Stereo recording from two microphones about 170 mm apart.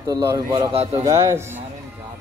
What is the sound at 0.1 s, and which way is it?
A man's voice, 25° right (ahead or behind).